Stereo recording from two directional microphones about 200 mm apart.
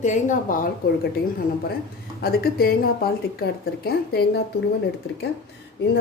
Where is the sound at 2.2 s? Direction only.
50° left (ahead or behind).